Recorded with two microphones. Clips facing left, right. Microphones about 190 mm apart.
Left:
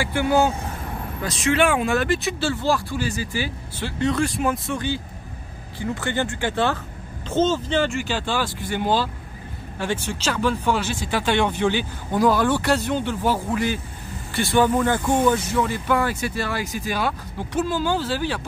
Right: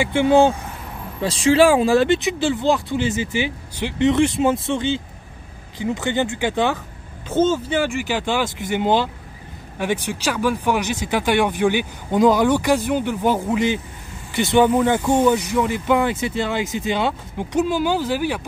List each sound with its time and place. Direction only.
0.0 s speech: 20° right (ahead or behind)